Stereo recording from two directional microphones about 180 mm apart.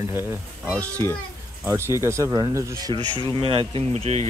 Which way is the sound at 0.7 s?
10° left (ahead or behind).